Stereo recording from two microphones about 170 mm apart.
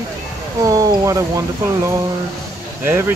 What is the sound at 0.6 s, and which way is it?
Speech, 20° right (ahead or behind).